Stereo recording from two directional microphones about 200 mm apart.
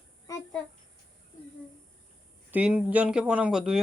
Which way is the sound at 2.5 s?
5° right (ahead or behind).